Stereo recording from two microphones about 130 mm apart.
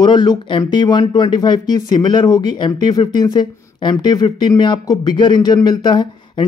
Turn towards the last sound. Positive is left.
turn(degrees=35)  # may be behind; listen again after turning